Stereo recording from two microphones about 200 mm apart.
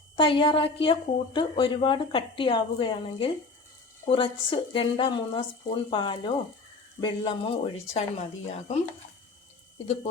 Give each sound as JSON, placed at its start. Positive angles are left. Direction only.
{"t": 0.2, "sound": "a woman's voice", "side_deg": 25}
{"t": 9.8, "sound": "speech", "side_deg": 30}